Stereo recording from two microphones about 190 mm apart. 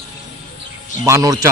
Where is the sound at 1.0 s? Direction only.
15° right (ahead or behind).